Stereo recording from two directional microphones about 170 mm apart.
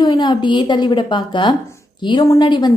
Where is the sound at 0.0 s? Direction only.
25° left (ahead or behind).